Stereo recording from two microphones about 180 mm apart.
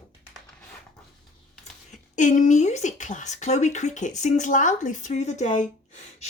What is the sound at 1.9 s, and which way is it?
Speech, 45° left (ahead or behind).